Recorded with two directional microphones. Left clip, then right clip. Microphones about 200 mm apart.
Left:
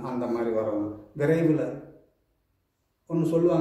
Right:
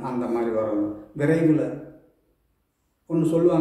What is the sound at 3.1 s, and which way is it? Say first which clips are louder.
Speech: right 3 dB; 10° left (ahead or behind).